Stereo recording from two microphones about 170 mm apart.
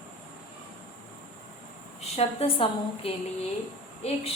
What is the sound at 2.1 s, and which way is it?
A woman's voice, 35° left (ahead or behind).